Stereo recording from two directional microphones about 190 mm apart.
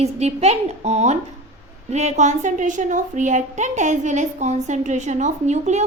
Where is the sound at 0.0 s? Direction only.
35° right (ahead or behind).